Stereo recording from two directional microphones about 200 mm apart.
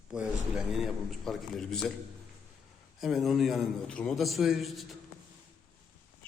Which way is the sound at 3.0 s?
Centre (ahead or behind).